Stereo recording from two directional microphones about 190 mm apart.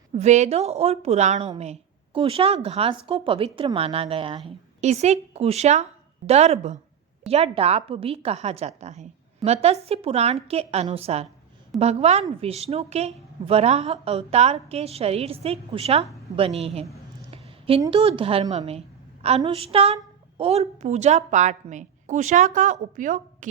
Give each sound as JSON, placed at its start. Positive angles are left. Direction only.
{"t": 0.1, "sound": "a woman's voice", "side_deg": -35}
{"t": 17.3, "sound": "a sound", "side_deg": -30}
{"t": 17.9, "sound": "a woman's voice", "side_deg": -30}